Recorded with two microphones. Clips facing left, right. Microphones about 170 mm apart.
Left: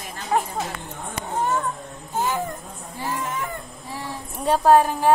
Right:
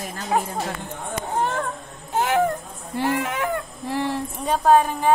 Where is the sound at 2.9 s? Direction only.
75° right (ahead or behind).